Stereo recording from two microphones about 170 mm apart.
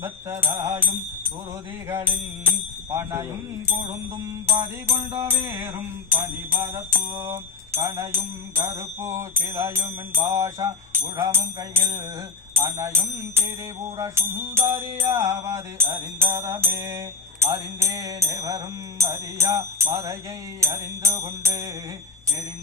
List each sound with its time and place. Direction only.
0.0 s music: 15° right (ahead or behind)
1.9 s music: 15° right (ahead or behind)
4.9 s music: 20° right (ahead or behind)